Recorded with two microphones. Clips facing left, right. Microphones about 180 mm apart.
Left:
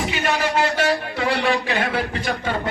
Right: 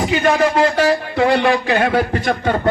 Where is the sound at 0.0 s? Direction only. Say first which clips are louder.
Right 7 dB; 40° right (ahead or behind).